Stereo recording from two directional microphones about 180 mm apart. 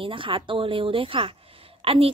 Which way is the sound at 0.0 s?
30° right (ahead or behind).